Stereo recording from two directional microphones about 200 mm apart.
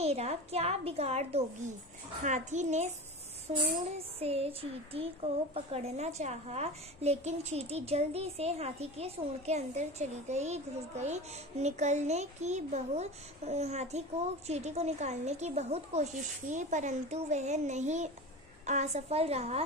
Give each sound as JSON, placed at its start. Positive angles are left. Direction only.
{"t": 0.0, "sound": "a woman's voice", "side_deg": -30}
{"t": 4.2, "sound": "a woman's voice", "side_deg": -30}